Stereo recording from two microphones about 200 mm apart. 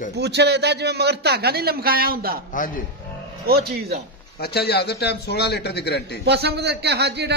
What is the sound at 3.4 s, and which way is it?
Speech, 50° right (ahead or behind).